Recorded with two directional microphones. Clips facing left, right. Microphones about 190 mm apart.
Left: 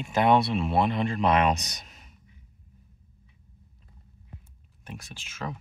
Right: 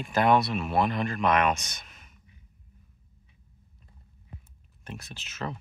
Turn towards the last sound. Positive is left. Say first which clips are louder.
# right 1 dB
turn(degrees=10)  # may be behind; listen again after turning